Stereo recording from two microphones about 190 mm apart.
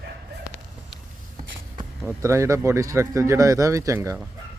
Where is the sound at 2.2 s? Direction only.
15° right (ahead or behind).